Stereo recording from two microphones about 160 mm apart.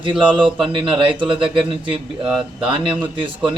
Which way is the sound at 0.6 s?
35° right (ahead or behind).